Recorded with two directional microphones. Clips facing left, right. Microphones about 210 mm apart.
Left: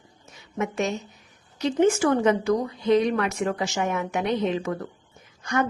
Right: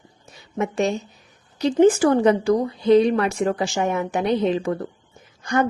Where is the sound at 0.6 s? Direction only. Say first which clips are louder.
Right 4 dB; 30° right (ahead or behind).